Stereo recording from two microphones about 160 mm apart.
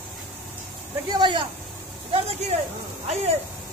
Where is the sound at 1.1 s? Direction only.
30° right (ahead or behind).